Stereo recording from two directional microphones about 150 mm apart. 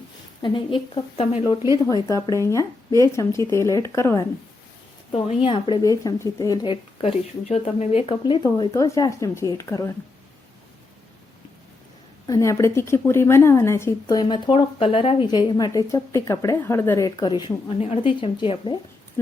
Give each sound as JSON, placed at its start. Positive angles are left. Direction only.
{"t": 0.4, "sound": "speech", "side_deg": 35}
{"t": 2.3, "sound": "a woman's voice", "side_deg": 20}
{"t": 5.1, "sound": "speech", "side_deg": 35}
{"t": 5.8, "sound": "a woman's voice", "side_deg": 25}
{"t": 7.0, "sound": "speech", "side_deg": 40}
{"t": 8.4, "sound": "a woman's voice", "side_deg": 30}
{"t": 12.3, "sound": "a woman's voice", "side_deg": 20}
{"t": 14.2, "sound": "speech", "side_deg": 30}
{"t": 15.3, "sound": "a woman's voice", "side_deg": 30}
{"t": 17.7, "sound": "speech", "side_deg": 45}